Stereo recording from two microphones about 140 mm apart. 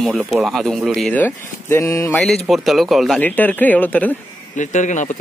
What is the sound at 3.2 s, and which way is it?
Speech, 10° left (ahead or behind).